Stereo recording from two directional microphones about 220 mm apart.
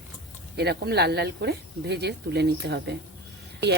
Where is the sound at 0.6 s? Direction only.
50° right (ahead or behind).